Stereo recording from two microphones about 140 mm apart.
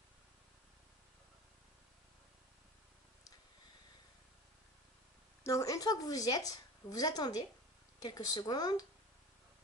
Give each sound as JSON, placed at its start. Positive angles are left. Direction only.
{"t": 5.4, "sound": "a woman's voice", "side_deg": 20}